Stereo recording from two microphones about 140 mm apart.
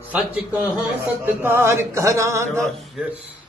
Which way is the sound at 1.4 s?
15° right (ahead or behind).